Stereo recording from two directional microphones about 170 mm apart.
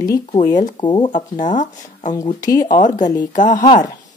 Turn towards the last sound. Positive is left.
turn(degrees=25)  # may be behind; listen again after turning